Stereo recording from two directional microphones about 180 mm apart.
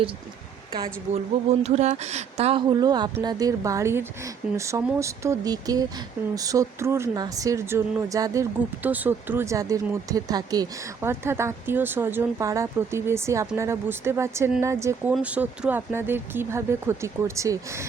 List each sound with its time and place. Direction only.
1.1 s speech: 40° right (ahead or behind); by 17.8 s 15° right (ahead or behind)